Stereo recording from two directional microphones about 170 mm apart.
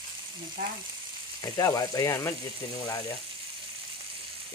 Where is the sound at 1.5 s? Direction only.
20° left (ahead or behind).